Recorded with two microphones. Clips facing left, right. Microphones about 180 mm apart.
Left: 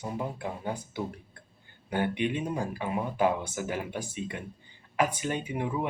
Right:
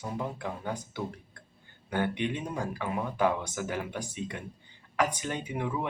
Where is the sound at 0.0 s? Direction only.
20° left (ahead or behind).